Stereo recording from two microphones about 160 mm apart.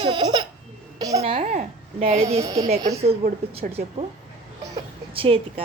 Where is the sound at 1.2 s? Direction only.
40° right (ahead or behind).